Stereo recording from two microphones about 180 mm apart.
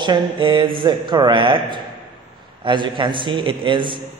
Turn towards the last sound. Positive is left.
turn(degrees=-25)  # may be behind; listen again after turning